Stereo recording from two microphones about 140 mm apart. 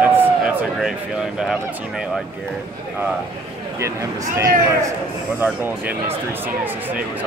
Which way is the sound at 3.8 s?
20° right (ahead or behind).